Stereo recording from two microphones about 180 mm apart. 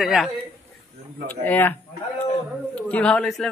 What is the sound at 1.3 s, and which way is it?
Speech, 10° left (ahead or behind).